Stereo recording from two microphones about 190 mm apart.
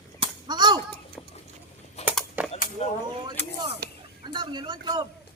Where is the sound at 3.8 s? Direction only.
55° right (ahead or behind).